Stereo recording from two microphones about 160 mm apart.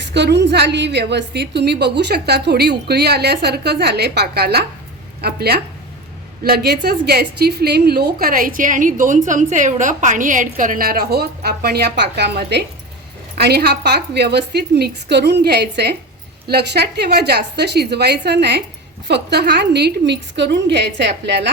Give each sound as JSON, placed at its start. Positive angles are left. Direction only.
{"t": 0.1, "sound": "a woman's voice", "side_deg": -90}